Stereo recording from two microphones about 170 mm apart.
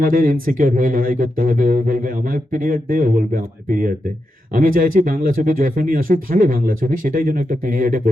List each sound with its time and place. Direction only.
0.0 s speech: 55° right (ahead or behind)